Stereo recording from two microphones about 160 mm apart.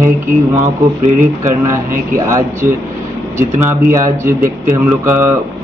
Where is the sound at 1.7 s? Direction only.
20° right (ahead or behind).